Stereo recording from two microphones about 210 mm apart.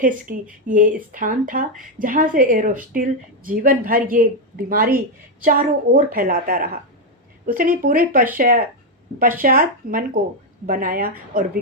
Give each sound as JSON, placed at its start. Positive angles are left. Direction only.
{"t": 0.0, "sound": "a woman's voice", "side_deg": -40}